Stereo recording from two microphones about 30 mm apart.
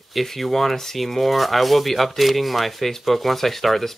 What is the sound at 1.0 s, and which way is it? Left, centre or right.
Speech, centre.